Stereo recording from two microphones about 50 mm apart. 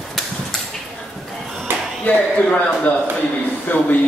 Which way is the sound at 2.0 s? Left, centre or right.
Left.